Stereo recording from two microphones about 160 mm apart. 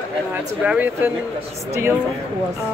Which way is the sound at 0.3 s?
10° right (ahead or behind).